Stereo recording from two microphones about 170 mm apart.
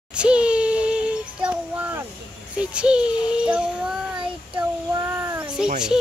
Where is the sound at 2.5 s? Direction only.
5° right (ahead or behind).